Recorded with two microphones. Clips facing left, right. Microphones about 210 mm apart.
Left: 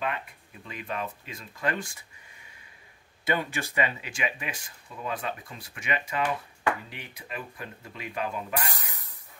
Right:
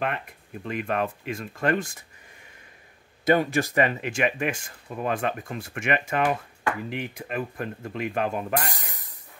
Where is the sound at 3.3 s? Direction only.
45° right (ahead or behind).